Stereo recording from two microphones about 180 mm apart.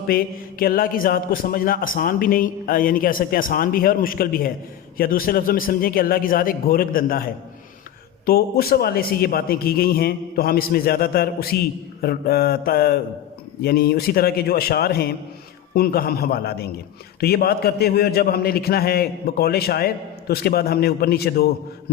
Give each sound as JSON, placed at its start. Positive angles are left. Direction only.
{"t": 0.1, "sound": "a man's voice", "side_deg": 55}
{"t": 8.3, "sound": "a man's voice", "side_deg": 55}